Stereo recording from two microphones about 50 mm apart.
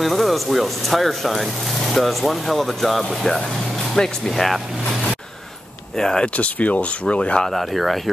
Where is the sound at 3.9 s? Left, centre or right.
Centre.